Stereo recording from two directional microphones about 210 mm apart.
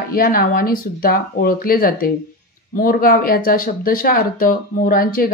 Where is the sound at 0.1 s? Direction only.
45° left (ahead or behind).